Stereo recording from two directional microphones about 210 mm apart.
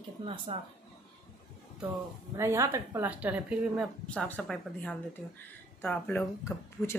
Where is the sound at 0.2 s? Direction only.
25° right (ahead or behind).